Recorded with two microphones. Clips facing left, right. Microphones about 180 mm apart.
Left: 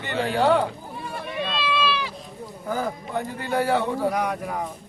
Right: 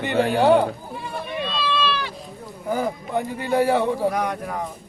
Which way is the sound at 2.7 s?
15° right (ahead or behind).